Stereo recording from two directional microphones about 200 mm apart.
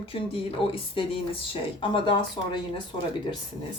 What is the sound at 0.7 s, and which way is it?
A woman's voice, 25° left (ahead or behind).